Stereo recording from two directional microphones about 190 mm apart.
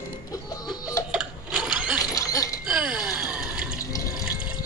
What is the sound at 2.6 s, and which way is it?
Gasp, 5° right (ahead or behind).